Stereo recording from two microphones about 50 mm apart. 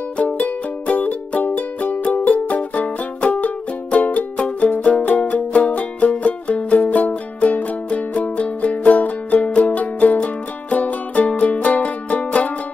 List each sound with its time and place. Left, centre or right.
0.2 s music: left